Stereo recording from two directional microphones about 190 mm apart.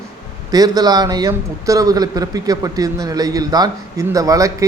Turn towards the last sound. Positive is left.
turn(degrees=-15)  # may be behind; listen again after turning